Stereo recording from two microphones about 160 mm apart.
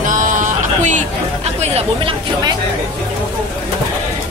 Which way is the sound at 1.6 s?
40° right (ahead or behind).